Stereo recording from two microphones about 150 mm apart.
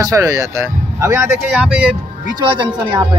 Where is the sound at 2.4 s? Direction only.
30° right (ahead or behind).